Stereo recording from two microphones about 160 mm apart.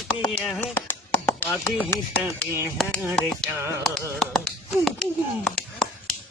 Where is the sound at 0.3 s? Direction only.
Centre (ahead or behind).